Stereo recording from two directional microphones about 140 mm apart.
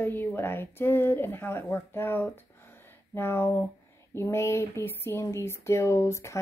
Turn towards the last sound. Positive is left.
turn(degrees=20)  # may be behind; listen again after turning